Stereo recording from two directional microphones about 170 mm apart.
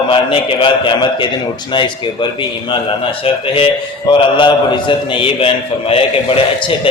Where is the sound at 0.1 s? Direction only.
30° left (ahead or behind).